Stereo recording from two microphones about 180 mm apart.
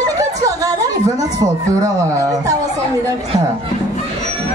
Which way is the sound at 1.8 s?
20° right (ahead or behind).